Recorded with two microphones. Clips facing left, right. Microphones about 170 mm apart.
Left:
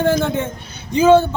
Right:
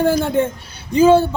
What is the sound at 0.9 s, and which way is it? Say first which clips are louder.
Speech: even; 10° right (ahead or behind).